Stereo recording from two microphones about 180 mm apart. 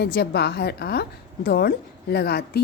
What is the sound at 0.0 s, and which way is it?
A woman's voice, 65° left (ahead or behind).